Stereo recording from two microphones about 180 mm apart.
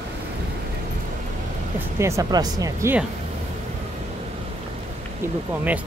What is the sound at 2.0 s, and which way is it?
Speech, 15° right (ahead or behind).